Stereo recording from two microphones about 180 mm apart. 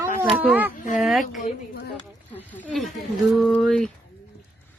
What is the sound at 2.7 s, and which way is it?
Speech, centre (ahead or behind).